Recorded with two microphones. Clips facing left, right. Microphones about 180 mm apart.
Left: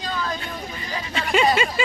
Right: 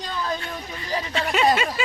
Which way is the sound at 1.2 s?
Centre (ahead or behind).